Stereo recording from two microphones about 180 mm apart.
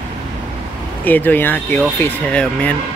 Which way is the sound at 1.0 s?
10° left (ahead or behind).